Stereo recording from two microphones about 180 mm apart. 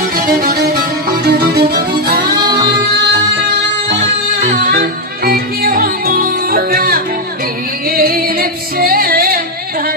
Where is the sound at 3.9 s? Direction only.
45° right (ahead or behind).